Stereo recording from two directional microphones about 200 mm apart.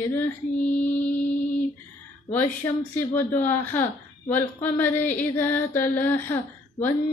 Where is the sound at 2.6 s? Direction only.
15° left (ahead or behind).